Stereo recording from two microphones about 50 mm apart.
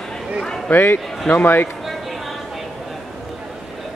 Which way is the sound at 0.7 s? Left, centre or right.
Left.